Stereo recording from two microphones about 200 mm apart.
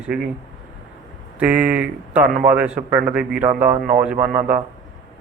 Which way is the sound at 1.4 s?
5° right (ahead or behind).